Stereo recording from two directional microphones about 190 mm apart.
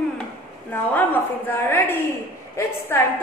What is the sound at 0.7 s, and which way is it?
A woman's voice, 10° left (ahead or behind).